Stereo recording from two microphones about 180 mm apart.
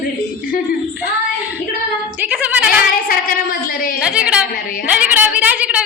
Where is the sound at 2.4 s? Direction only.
10° right (ahead or behind).